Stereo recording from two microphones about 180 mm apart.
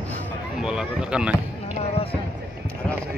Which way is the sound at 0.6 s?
5° right (ahead or behind).